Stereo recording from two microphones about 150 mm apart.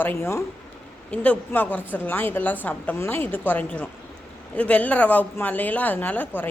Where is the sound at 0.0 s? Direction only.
15° left (ahead or behind).